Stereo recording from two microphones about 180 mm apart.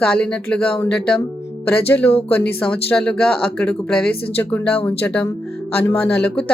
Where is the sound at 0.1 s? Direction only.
5° left (ahead or behind).